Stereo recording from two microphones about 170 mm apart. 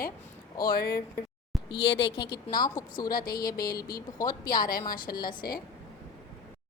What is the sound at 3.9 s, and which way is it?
Speech, 20° left (ahead or behind).